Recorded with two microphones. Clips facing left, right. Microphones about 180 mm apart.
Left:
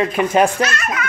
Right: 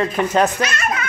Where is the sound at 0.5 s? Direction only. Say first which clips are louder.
Left 2 dB; 15° right (ahead or behind).